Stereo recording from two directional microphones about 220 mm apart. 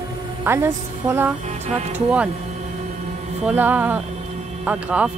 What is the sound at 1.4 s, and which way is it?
Music, 30° right (ahead or behind).